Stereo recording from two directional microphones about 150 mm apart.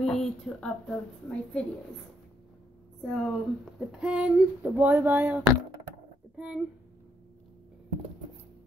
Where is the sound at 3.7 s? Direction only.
5° right (ahead or behind).